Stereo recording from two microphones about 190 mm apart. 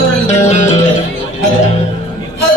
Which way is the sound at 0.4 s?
35° left (ahead or behind).